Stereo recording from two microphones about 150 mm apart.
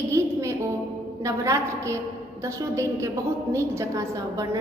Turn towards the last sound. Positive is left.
turn(degrees=-20)  # may be behind; listen again after turning